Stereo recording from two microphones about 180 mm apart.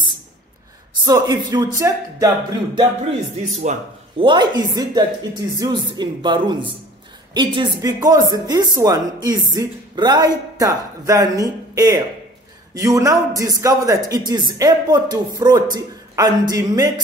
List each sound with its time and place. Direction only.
1.0 s speech: 20° right (ahead or behind)
3.7 s speech: 40° right (ahead or behind)
4.2 s speech: 25° right (ahead or behind)